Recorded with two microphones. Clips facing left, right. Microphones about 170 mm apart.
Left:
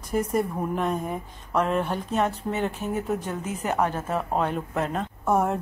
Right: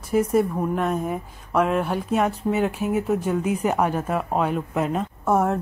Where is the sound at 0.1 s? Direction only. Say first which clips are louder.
Right 5 dB; 5° right (ahead or behind).